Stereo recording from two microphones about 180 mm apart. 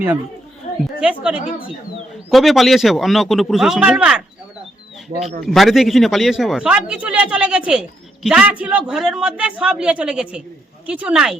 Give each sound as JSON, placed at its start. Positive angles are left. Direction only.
{"t": 0.7, "sound": "a sound", "side_deg": 40}
{"t": 1.0, "sound": "a woman's voice", "side_deg": -5}
{"t": 5.5, "sound": "speech", "side_deg": 0}